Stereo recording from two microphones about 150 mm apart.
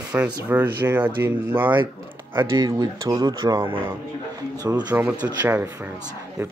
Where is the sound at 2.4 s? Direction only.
25° right (ahead or behind).